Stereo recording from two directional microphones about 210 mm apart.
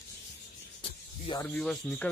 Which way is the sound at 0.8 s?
25° left (ahead or behind).